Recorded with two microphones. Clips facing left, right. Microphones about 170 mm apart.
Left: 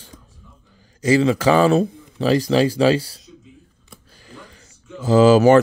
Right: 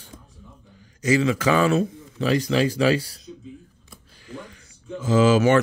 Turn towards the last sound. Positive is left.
turn(degrees=35)  # may be behind; listen again after turning